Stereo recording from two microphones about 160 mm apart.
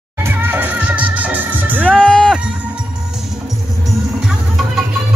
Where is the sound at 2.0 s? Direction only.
5° left (ahead or behind).